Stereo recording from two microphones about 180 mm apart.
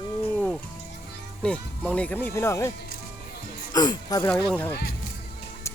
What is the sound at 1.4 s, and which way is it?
Speech, 5° left (ahead or behind).